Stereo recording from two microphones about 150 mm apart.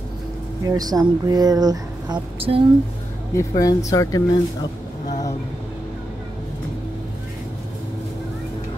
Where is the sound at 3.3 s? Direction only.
25° left (ahead or behind).